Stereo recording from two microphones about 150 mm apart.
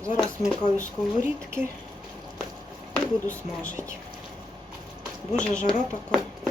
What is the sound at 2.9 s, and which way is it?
Speech, 10° left (ahead or behind).